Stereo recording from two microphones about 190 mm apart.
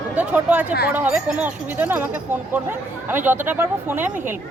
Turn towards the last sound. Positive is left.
turn(degrees=-10)  # may be behind; listen again after turning